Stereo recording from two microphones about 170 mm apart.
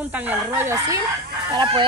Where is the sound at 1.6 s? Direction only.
30° right (ahead or behind).